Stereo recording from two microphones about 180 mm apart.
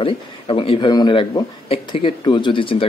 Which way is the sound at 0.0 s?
30° left (ahead or behind).